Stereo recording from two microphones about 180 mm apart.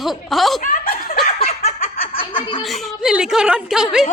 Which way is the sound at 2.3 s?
25° left (ahead or behind).